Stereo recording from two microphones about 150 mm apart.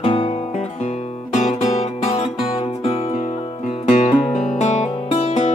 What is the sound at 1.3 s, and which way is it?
Music, 50° left (ahead or behind).